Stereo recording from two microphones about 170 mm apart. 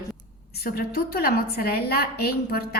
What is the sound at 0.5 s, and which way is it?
A woman's voice, 65° left (ahead or behind).